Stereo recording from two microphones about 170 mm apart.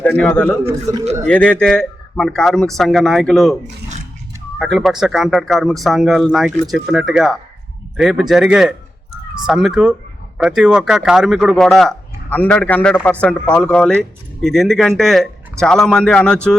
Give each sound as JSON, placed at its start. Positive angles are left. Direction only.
{"t": 0.0, "sound": "a man's voice", "side_deg": 5}
{"t": 0.6, "sound": "a man's voice", "side_deg": -20}
{"t": 1.3, "sound": "speech", "side_deg": 5}
{"t": 4.6, "sound": "speech", "side_deg": 0}